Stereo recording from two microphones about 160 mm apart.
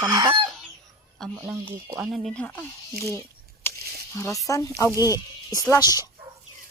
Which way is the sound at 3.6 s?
15° left (ahead or behind).